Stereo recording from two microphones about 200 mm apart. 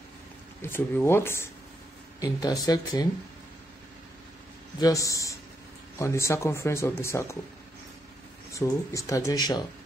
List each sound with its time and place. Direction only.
0.6 s speech: 10° left (ahead or behind)
4.7 s speech: 15° left (ahead or behind)
8.5 s speech: 15° left (ahead or behind)